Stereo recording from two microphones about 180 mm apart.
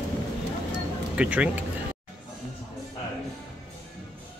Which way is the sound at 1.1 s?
5° right (ahead or behind).